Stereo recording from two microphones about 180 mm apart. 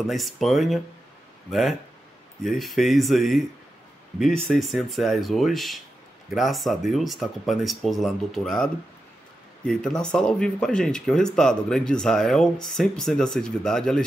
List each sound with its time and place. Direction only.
0.0 s speech: centre (ahead or behind)
4.5 s speech: centre (ahead or behind)